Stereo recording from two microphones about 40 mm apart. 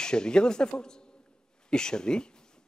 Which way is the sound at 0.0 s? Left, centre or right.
Centre.